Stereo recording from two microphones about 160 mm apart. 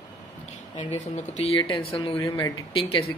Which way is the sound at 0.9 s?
40° left (ahead or behind).